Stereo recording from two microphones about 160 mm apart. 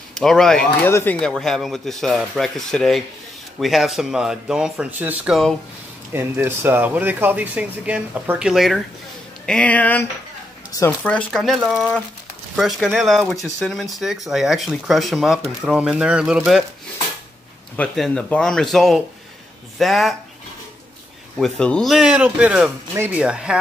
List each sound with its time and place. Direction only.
0.1 s speech: 5° left (ahead or behind)
0.8 s speech: 15° left (ahead or behind)
1.2 s speech: centre (ahead or behind); by 11.0 s 20° left (ahead or behind)
11.0 s speech: 5° left (ahead or behind)
17.7 s speech: 5° left (ahead or behind)
21.4 s speech: 5° left (ahead or behind)